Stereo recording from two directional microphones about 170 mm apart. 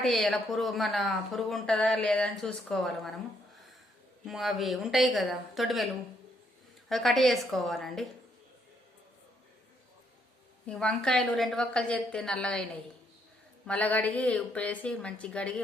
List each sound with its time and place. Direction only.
0.0 s speech: centre (ahead or behind)
4.3 s speech: centre (ahead or behind)
10.7 s speech: 5° left (ahead or behind)
13.7 s a woman's voice: 10° left (ahead or behind)